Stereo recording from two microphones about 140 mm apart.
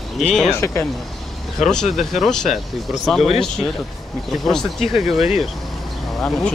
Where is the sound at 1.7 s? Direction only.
5° left (ahead or behind).